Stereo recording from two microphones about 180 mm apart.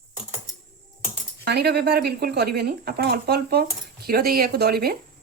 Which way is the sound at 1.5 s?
65° right (ahead or behind).